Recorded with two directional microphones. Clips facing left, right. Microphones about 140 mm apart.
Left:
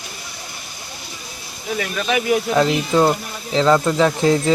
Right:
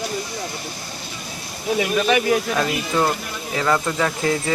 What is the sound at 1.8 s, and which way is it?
Speech, 5° right (ahead or behind).